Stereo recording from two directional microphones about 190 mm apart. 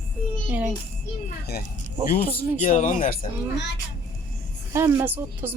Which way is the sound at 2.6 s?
40° left (ahead or behind).